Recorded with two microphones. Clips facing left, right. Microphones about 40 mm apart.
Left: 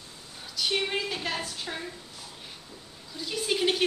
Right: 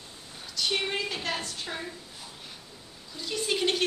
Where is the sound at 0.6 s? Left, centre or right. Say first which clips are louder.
Left 1 dB; centre.